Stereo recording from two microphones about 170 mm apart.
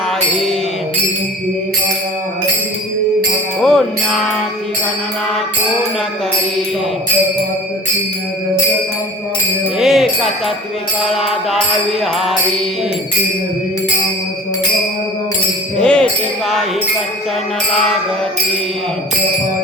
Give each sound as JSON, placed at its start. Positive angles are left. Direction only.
{"t": 3.6, "sound": "music", "side_deg": 5}
{"t": 9.7, "sound": "music", "side_deg": 0}
{"t": 15.8, "sound": "music", "side_deg": 5}